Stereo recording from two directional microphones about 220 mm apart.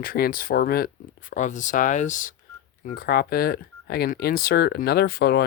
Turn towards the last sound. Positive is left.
turn(degrees=45)  # may be behind; listen again after turning